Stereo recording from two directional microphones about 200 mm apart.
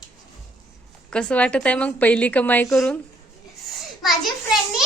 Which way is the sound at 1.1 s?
5° left (ahead or behind).